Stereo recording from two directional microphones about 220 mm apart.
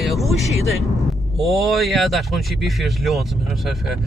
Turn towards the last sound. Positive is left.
turn(degrees=0)  # may be behind; listen again after turning